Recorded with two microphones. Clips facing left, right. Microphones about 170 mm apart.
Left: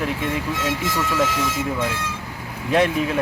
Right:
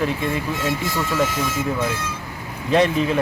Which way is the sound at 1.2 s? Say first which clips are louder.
Even; 90° left.